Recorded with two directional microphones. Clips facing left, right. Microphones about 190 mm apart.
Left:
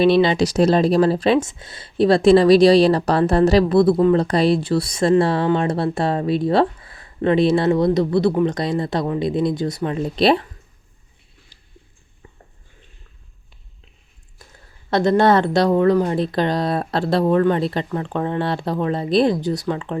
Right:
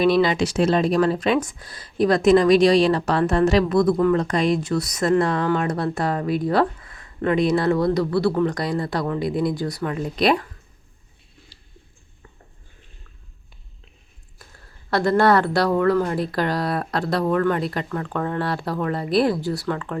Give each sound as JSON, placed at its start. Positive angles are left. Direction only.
{"t": 0.0, "sound": "speech", "side_deg": 30}
{"t": 14.8, "sound": "speech", "side_deg": 20}